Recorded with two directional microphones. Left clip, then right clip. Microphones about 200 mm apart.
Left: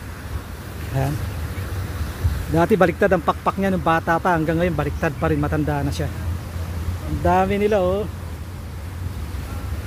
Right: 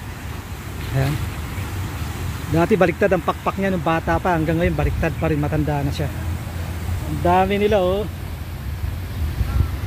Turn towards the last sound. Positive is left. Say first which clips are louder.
# right 1 dB
turn(degrees=10)  # may be behind; listen again after turning